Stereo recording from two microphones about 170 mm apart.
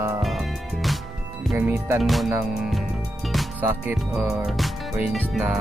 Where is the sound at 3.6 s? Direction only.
10° right (ahead or behind).